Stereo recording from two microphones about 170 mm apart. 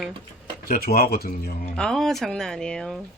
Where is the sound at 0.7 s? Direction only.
65° left (ahead or behind).